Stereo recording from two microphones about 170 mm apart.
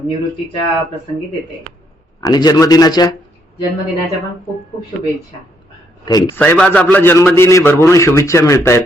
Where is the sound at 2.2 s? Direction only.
25° left (ahead or behind).